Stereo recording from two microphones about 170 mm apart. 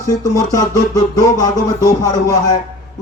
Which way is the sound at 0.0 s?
20° left (ahead or behind).